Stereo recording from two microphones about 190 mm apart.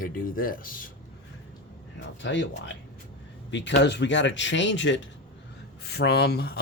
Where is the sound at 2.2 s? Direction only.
70° left (ahead or behind).